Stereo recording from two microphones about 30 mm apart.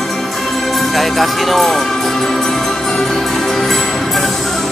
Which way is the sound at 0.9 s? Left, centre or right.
Centre.